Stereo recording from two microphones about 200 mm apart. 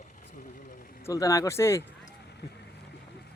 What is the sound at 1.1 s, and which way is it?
Speech, 15° left (ahead or behind).